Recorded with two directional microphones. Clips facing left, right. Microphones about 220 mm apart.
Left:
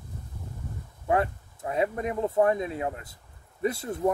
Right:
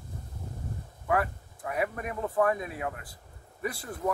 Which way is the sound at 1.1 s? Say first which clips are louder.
Left 3 dB; 25° left (ahead or behind).